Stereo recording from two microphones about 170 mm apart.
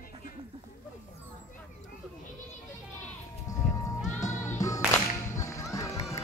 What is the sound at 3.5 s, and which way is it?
Music, 20° left (ahead or behind).